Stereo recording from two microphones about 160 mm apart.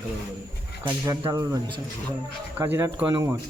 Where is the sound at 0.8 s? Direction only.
20° right (ahead or behind).